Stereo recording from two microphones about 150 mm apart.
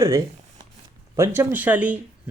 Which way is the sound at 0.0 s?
20° right (ahead or behind).